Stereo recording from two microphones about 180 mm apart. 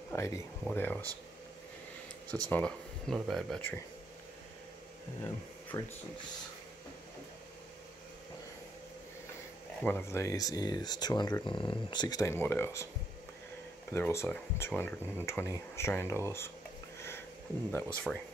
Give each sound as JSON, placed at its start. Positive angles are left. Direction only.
{"t": 0.1, "sound": "speech", "side_deg": 15}
{"t": 2.5, "sound": "speech", "side_deg": 5}
{"t": 5.2, "sound": "speech", "side_deg": 10}
{"t": 9.8, "sound": "speech", "side_deg": 10}
{"t": 13.9, "sound": "speech", "side_deg": 15}
{"t": 17.7, "sound": "speech", "side_deg": 5}